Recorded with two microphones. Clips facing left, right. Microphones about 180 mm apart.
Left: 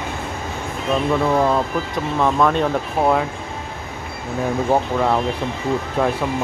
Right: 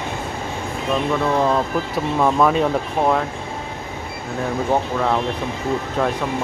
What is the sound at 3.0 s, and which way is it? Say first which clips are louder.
Speech: left 1 dB; 5° left (ahead or behind).